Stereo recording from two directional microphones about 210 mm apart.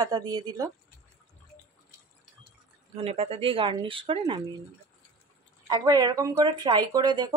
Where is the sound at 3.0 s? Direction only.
30° right (ahead or behind).